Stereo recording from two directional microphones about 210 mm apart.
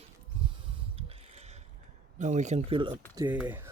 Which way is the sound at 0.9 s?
30° right (ahead or behind).